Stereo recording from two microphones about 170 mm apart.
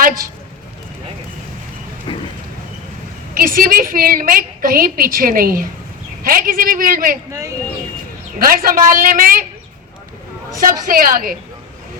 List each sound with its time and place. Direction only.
2.1 s a sound: 30° left (ahead or behind)
3.3 s a woman's voice: 60° right (ahead or behind)
7.3 s speech: 20° right (ahead or behind)
8.4 s a woman's voice: 60° right (ahead or behind)
10.6 s a woman's voice: 55° right (ahead or behind)